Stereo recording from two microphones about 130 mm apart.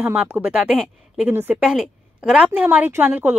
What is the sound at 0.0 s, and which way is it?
Speech, 10° right (ahead or behind).